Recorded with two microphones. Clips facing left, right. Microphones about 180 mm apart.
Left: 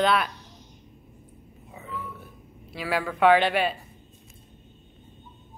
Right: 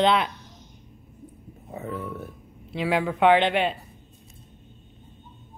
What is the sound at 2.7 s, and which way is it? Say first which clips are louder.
A woman's voice: right 4 dB; 20° right (ahead or behind).